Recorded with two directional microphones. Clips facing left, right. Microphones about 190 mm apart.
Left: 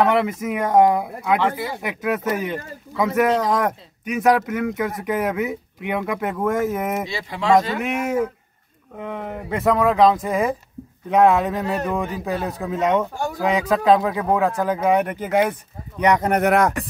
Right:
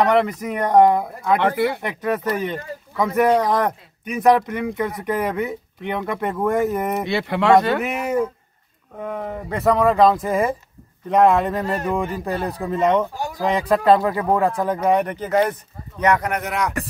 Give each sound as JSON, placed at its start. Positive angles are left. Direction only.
{"t": 0.0, "sound": "speech", "side_deg": 5}
{"t": 1.4, "sound": "speech", "side_deg": -60}
{"t": 1.8, "sound": "speech", "side_deg": 5}
{"t": 7.1, "sound": "speech", "side_deg": -60}
{"t": 7.8, "sound": "speech", "side_deg": 0}
{"t": 16.3, "sound": "speech", "side_deg": 50}